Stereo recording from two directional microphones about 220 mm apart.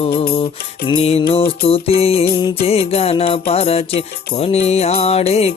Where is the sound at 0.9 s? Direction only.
25° left (ahead or behind).